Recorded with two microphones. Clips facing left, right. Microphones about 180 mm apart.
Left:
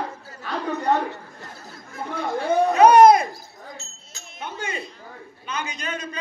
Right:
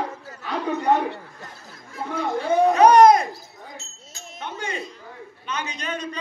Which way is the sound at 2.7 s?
5° left (ahead or behind).